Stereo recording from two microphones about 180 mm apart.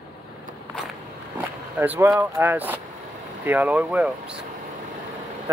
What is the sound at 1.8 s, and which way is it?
Speech, 15° right (ahead or behind).